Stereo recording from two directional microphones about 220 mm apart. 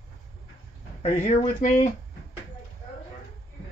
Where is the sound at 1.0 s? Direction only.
30° left (ahead or behind).